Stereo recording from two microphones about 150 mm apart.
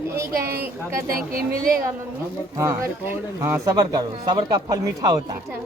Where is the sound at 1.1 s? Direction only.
75° right (ahead or behind).